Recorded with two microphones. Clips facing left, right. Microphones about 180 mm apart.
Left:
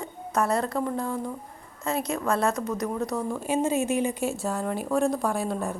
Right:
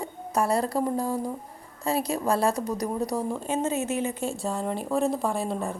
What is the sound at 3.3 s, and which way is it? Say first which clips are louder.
Speech: left 2 dB; 10° left (ahead or behind).